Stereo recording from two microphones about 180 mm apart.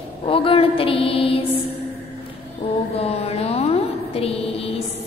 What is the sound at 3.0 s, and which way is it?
Music, 35° left (ahead or behind).